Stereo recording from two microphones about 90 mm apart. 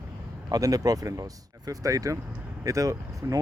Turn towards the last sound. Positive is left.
turn(degrees=-40)  # may be behind; listen again after turning